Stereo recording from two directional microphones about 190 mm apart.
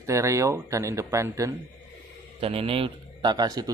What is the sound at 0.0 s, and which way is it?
Speech, 15° right (ahead or behind).